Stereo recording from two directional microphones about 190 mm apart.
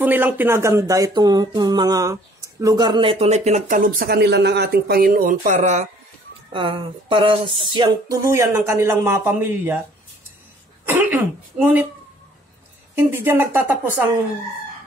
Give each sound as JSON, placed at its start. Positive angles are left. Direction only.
{"t": 0.0, "sound": "speech", "side_deg": -10}
{"t": 6.5, "sound": "a sound", "side_deg": -25}
{"t": 8.2, "sound": "speech", "side_deg": -15}
{"t": 10.9, "sound": "speech", "side_deg": -10}
{"t": 12.9, "sound": "speech", "side_deg": -10}